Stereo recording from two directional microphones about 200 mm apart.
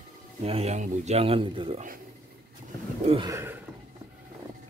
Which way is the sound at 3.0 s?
30° right (ahead or behind).